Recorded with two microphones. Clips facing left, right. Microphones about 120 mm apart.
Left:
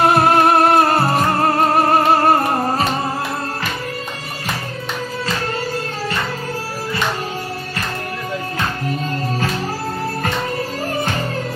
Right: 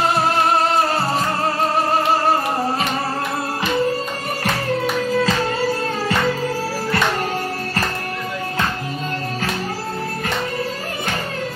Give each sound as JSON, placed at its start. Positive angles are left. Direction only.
{"t": 0.0, "sound": "music", "side_deg": 55}